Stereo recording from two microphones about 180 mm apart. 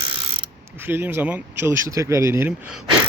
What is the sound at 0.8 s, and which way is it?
Speech, 10° right (ahead or behind).